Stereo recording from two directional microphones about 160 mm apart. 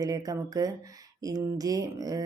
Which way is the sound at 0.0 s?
20° right (ahead or behind).